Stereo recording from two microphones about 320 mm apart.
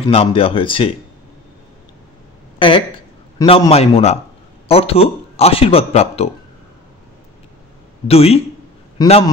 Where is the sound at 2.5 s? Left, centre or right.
Centre.